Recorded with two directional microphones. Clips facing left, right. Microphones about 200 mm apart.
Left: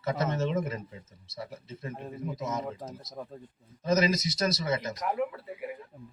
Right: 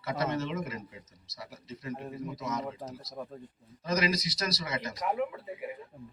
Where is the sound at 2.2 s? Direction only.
25° left (ahead or behind).